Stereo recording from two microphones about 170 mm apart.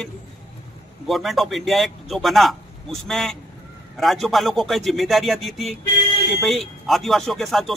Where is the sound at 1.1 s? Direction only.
Centre (ahead or behind).